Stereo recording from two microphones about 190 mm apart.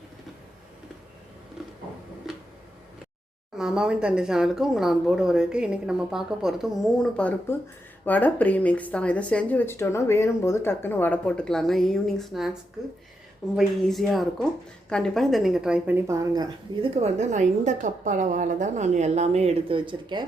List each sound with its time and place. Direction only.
1.6 s a sound: centre (ahead or behind)
2.3 s tick-tock: centre (ahead or behind)
3.6 s speech: 5° right (ahead or behind)
13.6 s speech: centre (ahead or behind); by 16.5 s 20° right (ahead or behind)
16.9 s a woman's voice: 35° right (ahead or behind)